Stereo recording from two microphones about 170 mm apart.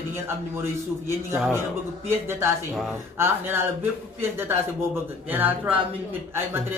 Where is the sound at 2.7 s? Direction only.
Centre (ahead or behind).